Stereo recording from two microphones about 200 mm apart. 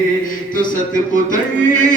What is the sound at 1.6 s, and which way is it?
Music, 40° left (ahead or behind).